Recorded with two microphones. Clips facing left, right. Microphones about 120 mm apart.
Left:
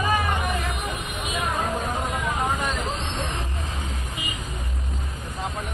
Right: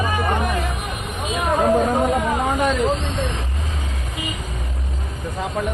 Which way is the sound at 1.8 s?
90° right.